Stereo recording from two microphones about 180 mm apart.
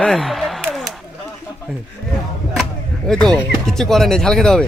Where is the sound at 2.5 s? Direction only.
Centre (ahead or behind).